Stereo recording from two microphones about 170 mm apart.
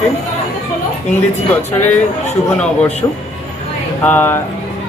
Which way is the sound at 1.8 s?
10° left (ahead or behind).